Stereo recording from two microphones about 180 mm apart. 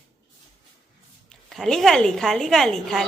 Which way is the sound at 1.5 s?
Centre (ahead or behind).